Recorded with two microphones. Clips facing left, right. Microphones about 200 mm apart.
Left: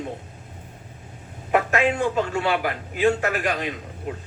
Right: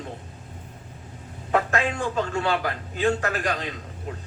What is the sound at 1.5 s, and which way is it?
Speech, 15° left (ahead or behind).